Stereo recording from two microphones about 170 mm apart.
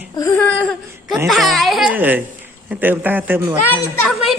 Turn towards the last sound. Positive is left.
turn(degrees=10)  # may be behind; listen again after turning